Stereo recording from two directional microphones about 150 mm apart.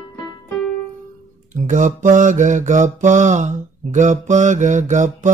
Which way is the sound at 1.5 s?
55° right (ahead or behind).